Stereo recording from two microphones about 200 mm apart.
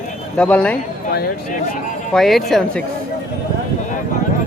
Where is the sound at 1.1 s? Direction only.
45° left (ahead or behind).